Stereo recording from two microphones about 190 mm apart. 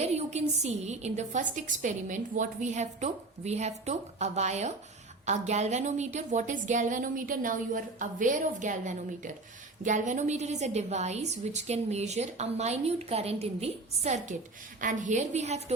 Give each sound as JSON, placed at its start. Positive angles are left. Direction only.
{"t": 0.0, "sound": "a woman's voice", "side_deg": -35}